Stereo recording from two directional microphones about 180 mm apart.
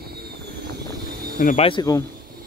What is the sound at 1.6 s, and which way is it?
Speech, 25° left (ahead or behind).